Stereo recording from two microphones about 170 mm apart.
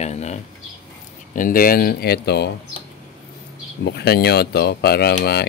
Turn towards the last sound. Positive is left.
turn(degrees=70)  # may be behind; listen again after turning